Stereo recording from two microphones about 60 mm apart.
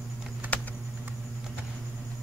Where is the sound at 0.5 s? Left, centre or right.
Left.